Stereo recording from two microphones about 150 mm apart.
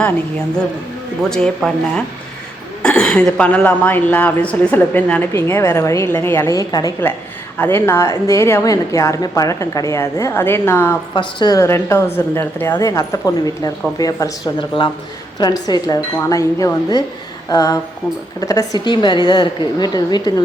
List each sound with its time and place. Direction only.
0.0 s a woman's voice: 5° left (ahead or behind)
11.1 s a woman's voice: 30° left (ahead or behind)